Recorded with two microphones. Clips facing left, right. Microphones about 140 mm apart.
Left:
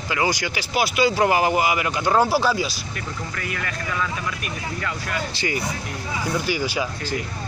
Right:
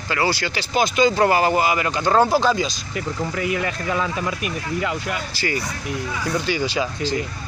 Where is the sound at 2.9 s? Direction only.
20° right (ahead or behind).